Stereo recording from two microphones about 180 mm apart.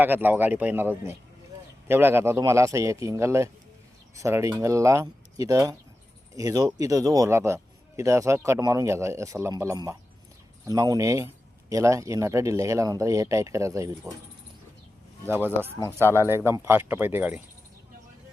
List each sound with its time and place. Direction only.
0.0 s a man's voice: 10° right (ahead or behind)
15.3 s a man's voice: 10° right (ahead or behind)